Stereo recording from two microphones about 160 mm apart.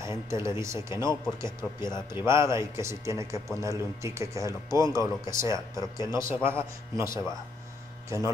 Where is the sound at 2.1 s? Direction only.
15° right (ahead or behind).